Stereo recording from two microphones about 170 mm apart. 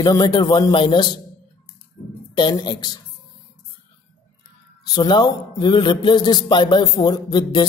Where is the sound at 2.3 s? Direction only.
25° left (ahead or behind).